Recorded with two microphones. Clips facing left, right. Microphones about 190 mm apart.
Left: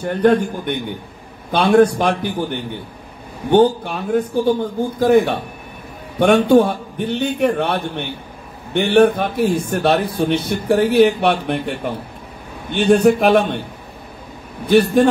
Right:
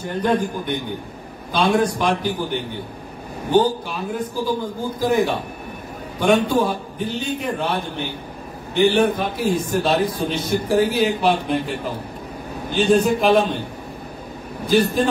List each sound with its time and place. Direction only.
0.0 s a man's voice: 60° left (ahead or behind)
3.4 s a man's voice: 60° left (ahead or behind)
14.7 s a man's voice: 65° left (ahead or behind)